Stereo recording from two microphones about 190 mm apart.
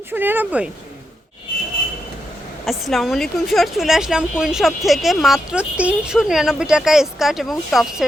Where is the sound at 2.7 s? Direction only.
Centre (ahead or behind).